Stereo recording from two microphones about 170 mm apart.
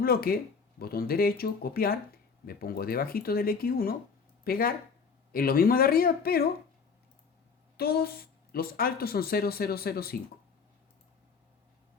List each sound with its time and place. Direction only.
0.0 s speech: 60° left (ahead or behind)
7.8 s speech: 65° left (ahead or behind)